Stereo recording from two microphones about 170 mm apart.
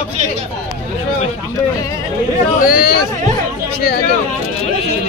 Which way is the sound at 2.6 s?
60° left (ahead or behind).